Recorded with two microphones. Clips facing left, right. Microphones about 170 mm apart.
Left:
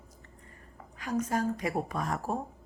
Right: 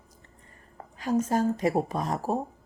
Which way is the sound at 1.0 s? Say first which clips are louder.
Right 5 dB; 25° right (ahead or behind).